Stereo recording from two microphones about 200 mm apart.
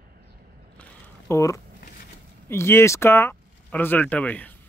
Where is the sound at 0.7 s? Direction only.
15° left (ahead or behind).